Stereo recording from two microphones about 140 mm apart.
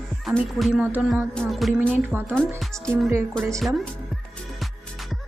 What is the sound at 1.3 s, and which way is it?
Speech, 5° left (ahead or behind).